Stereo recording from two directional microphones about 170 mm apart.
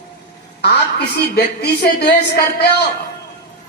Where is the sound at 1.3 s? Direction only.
75° left (ahead or behind).